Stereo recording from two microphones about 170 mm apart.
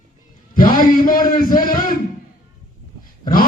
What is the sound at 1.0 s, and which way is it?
Speech, 55° left (ahead or behind).